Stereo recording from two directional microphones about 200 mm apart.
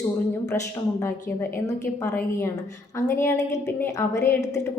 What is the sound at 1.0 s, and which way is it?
A woman's voice, 10° left (ahead or behind).